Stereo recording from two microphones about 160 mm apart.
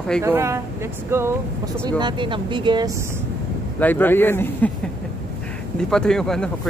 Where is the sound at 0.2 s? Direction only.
15° right (ahead or behind).